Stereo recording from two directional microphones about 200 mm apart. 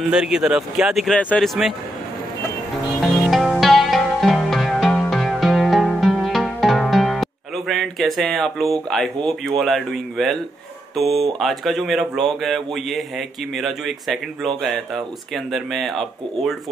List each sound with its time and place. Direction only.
0.1 s speech: centre (ahead or behind)
3.0 s music: centre (ahead or behind)
11.0 s speech: centre (ahead or behind)